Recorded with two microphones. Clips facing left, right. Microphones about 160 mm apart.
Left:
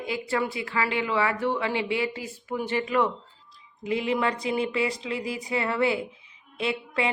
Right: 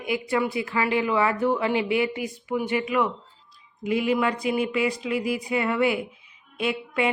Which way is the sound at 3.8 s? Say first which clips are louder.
Right 3 dB; 25° left (ahead or behind).